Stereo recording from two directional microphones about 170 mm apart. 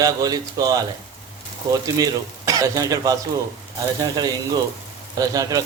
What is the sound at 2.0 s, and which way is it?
A man's voice, 20° right (ahead or behind).